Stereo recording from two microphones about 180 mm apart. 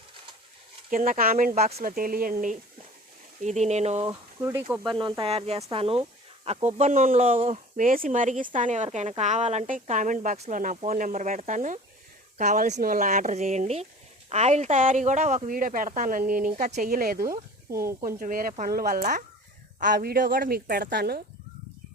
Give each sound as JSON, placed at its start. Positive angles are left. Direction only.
{"t": 0.9, "sound": "speech", "side_deg": -50}
{"t": 4.0, "sound": "speech", "side_deg": -20}
{"t": 4.9, "sound": "speech", "side_deg": -25}